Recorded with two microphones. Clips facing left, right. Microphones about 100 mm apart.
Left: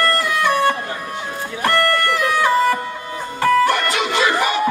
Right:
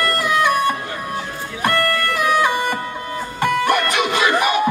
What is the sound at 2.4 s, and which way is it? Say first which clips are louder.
Music: left 3 dB; 15° right (ahead or behind).